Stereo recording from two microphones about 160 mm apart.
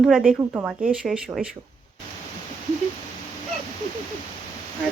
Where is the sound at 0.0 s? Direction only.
Centre (ahead or behind).